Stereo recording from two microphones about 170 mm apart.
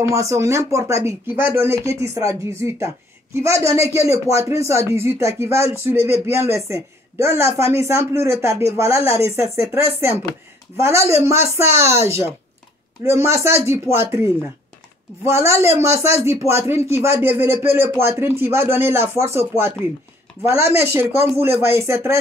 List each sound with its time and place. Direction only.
0.0 s speech: 15° right (ahead or behind)